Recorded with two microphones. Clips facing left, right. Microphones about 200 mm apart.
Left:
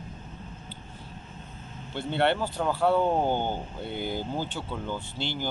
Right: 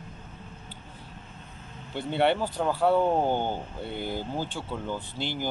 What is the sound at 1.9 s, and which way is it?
Speech, 10° right (ahead or behind).